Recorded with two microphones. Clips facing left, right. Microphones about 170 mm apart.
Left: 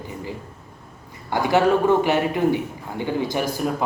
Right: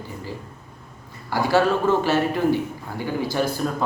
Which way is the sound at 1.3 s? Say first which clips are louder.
Left 1 dB; 20° left (ahead or behind).